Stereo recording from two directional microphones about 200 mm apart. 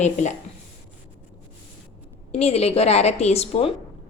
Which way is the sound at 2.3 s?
30° left (ahead or behind).